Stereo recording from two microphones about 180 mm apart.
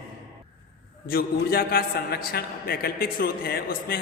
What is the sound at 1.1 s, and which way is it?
A man's voice, 55° left (ahead or behind).